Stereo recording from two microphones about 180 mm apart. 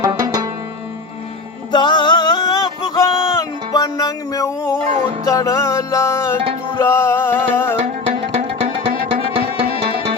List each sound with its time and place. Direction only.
0.1 s music: 20° right (ahead or behind)
1.7 s music: 25° left (ahead or behind)
7.8 s music: 35° right (ahead or behind)